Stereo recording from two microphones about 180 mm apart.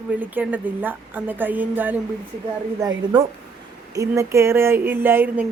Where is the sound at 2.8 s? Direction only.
25° right (ahead or behind).